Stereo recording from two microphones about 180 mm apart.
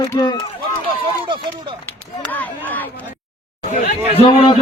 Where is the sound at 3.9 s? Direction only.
35° left (ahead or behind).